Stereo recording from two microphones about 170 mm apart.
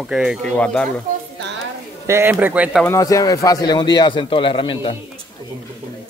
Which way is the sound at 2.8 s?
20° left (ahead or behind).